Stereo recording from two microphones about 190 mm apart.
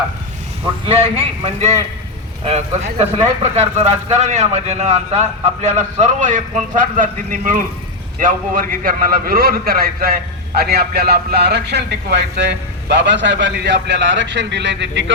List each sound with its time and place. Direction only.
0.9 s a man's voice: 30° right (ahead or behind); by 15.1 s 70° right (ahead or behind)